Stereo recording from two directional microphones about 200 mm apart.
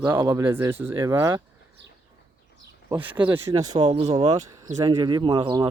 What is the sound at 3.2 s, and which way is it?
Speech, 25° right (ahead or behind).